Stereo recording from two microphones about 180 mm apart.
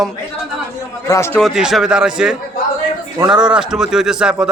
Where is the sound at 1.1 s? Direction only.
15° left (ahead or behind).